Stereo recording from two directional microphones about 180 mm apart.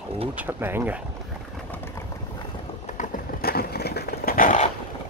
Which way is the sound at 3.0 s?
50° left (ahead or behind).